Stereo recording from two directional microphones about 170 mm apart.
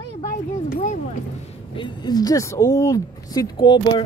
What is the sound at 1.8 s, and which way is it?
Speech, 25° left (ahead or behind).